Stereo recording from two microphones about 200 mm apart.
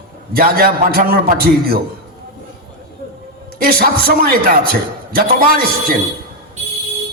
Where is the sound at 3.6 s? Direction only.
50° right (ahead or behind).